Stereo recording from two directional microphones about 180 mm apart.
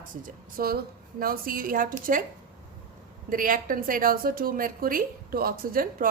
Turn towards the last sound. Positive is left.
turn(degrees=-55)  # may be behind; listen again after turning